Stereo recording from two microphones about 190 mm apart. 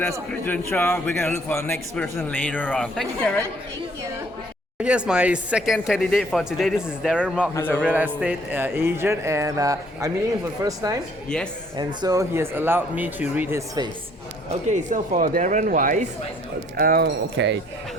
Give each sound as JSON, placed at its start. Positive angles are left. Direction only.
{"t": 0.4, "sound": "a man's voice", "side_deg": 10}
{"t": 4.8, "sound": "speech", "side_deg": -5}
{"t": 7.5, "sound": "a man's voice", "side_deg": 10}
{"t": 7.8, "sound": "a man's voice", "side_deg": -10}
{"t": 14.7, "sound": "speech", "side_deg": -40}
{"t": 17.3, "sound": "a man's voice", "side_deg": -65}